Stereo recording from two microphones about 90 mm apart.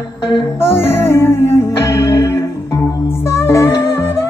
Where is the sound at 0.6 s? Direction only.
25° left (ahead or behind).